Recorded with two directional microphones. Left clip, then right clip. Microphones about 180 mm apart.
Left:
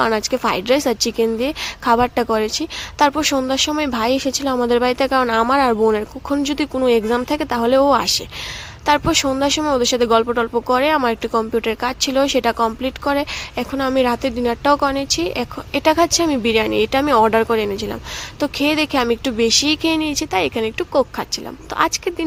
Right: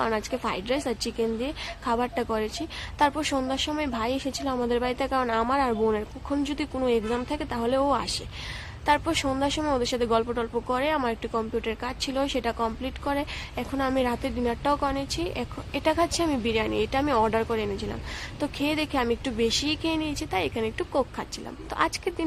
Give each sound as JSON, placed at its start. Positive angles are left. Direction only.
{"t": 0.0, "sound": "speech", "side_deg": 35}